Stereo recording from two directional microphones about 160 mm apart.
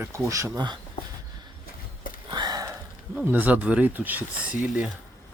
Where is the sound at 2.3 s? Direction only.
25° right (ahead or behind).